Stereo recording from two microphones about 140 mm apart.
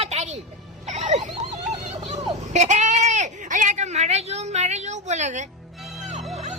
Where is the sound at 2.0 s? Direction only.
55° right (ahead or behind).